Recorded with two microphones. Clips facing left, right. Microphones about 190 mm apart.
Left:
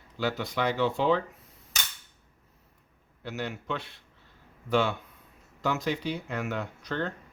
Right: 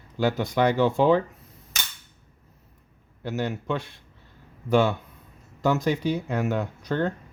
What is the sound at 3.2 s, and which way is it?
Speech, 45° right (ahead or behind).